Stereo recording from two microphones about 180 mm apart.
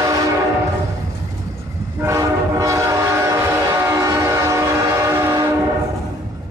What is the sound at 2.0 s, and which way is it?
Train, 15° right (ahead or behind).